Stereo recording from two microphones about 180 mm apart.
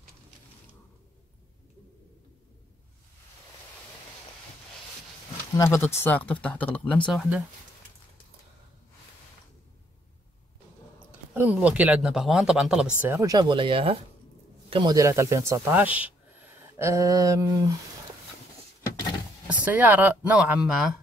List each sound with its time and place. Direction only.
5.6 s speech: 15° left (ahead or behind); by 7.4 s centre (ahead or behind)
11.3 s speech: 10° right (ahead or behind)
13.0 s speech: 15° right (ahead or behind)
19.6 s speech: 10° right (ahead or behind)